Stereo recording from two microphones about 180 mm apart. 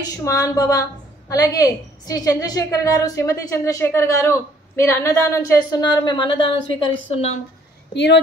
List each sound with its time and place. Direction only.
0.0 s a woman's voice: 20° left (ahead or behind); by 7.3 s 35° left (ahead or behind)
7.9 s speech: 70° left (ahead or behind)